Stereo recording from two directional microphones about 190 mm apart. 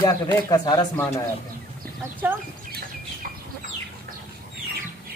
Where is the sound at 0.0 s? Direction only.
20° left (ahead or behind).